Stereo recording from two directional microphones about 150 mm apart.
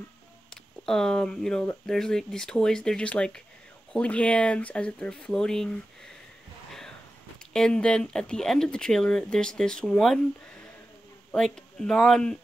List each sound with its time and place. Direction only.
0.8 s speech: 5° left (ahead or behind)
7.5 s speech: 5° left (ahead or behind)